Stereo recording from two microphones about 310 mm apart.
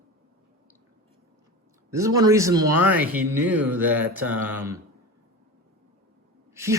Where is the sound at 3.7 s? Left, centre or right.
Centre.